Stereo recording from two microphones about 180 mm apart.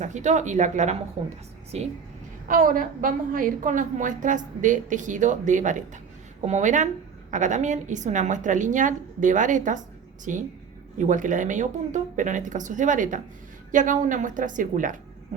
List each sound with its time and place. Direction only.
0.0 s speech: 40° right (ahead or behind)
2.5 s a woman's voice: 50° right (ahead or behind)